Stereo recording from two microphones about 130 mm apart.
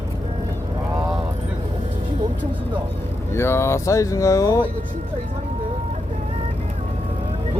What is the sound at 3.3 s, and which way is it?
Speech, 20° left (ahead or behind).